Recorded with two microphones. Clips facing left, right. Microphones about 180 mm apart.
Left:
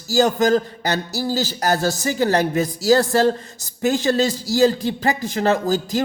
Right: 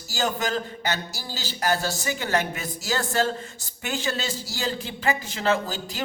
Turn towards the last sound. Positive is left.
turn(degrees=40)  # may be behind; listen again after turning